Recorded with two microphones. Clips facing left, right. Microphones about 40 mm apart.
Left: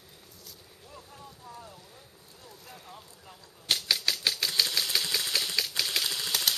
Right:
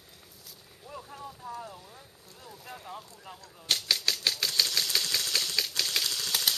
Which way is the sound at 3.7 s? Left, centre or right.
Centre.